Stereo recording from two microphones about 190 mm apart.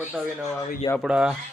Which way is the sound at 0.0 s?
Centre (ahead or behind).